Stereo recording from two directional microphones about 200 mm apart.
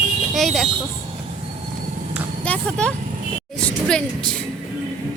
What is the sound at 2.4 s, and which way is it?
Speech, 5° left (ahead or behind).